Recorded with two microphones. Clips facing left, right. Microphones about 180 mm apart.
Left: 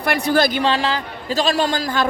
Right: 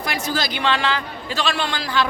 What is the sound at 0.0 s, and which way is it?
Speech, 60° left (ahead or behind).